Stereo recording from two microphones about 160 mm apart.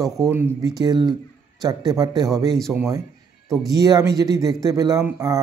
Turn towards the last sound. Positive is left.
turn(degrees=-20)  # may be behind; listen again after turning